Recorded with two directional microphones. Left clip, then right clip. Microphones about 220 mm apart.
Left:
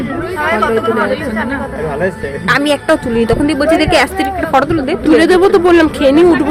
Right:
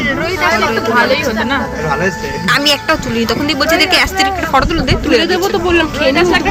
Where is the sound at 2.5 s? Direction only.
20° left (ahead or behind).